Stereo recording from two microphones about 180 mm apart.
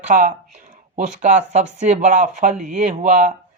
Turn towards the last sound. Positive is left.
turn(degrees=-45)  # may be behind; listen again after turning